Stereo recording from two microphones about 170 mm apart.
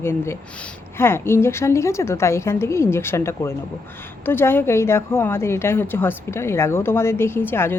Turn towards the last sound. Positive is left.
turn(degrees=15)  # may be behind; listen again after turning